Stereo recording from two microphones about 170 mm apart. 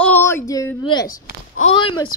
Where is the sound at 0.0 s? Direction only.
10° left (ahead or behind).